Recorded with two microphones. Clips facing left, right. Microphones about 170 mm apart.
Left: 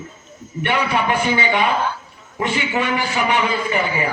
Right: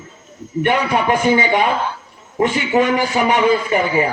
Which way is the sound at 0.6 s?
45° right (ahead or behind).